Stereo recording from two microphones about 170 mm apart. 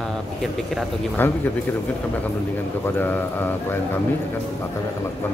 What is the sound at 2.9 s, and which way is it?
Speech, 10° left (ahead or behind).